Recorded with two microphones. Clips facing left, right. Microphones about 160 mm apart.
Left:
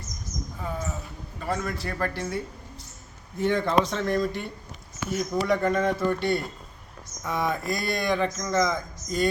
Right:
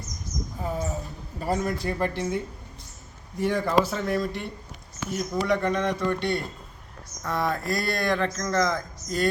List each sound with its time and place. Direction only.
0.6 s a sound: 35° right (ahead or behind)
1.4 s a man's voice: 35° right (ahead or behind)
1.9 s speech: 20° right (ahead or behind); by 9.2 s centre (ahead or behind)